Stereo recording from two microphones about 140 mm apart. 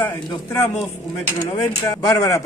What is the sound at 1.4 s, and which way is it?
Speech, 30° left (ahead or behind).